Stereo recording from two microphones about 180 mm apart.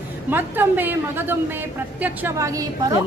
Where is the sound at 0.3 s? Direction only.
10° right (ahead or behind).